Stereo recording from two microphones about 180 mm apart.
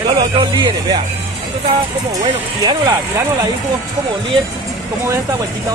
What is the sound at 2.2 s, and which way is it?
Speech, 15° right (ahead or behind).